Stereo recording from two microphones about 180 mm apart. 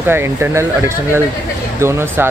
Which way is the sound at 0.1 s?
15° right (ahead or behind).